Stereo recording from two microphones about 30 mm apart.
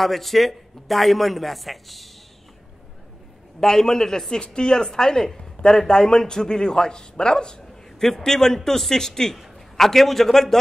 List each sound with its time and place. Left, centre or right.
0.0 s speech: centre
3.6 s a man's voice: centre
4.3 s a man's voice: left
7.6 s a sound: centre
8.6 s a man's voice: centre